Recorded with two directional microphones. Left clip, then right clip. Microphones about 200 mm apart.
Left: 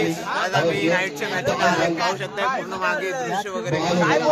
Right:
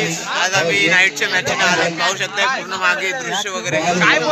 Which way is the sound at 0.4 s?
5° left (ahead or behind).